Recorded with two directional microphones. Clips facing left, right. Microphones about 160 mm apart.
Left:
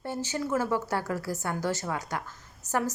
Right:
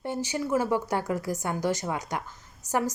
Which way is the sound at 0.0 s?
15° right (ahead or behind).